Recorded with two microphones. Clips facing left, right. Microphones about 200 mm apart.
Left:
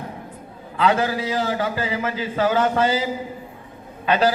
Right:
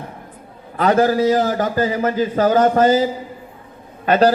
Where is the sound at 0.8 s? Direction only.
45° right (ahead or behind).